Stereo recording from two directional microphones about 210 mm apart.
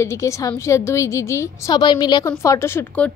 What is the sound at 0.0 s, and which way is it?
A woman's voice, 15° left (ahead or behind).